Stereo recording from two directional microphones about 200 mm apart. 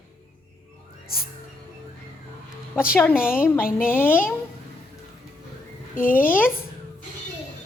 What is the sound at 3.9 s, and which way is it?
Speech, 10° left (ahead or behind).